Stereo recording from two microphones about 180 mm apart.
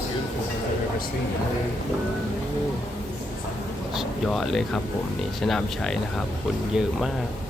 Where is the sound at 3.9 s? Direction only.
Centre (ahead or behind).